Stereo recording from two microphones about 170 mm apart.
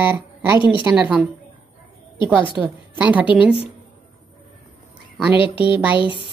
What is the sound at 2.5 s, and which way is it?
Speech, 10° right (ahead or behind).